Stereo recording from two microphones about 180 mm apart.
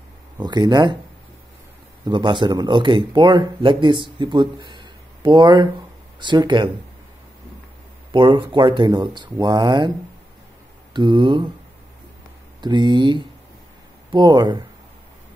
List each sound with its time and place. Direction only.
0.4 s speech: 25° right (ahead or behind)
2.0 s speech: 25° right (ahead or behind)
8.1 s speech: 25° right (ahead or behind)
10.9 s mantra: 25° right (ahead or behind)
12.6 s speech: 25° right (ahead or behind)